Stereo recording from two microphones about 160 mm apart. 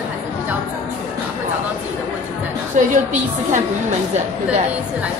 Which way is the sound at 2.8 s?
50° right (ahead or behind).